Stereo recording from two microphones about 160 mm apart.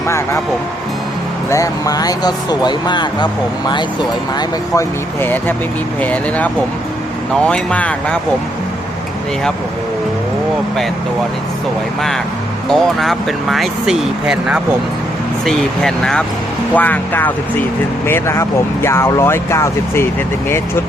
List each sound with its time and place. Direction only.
0.1 s speech: 15° left (ahead or behind)
1.5 s speech: 20° left (ahead or behind)
4.4 s speech: 20° left (ahead or behind)
12.7 s speech: centre (ahead or behind); by 20.1 s 15° left (ahead or behind)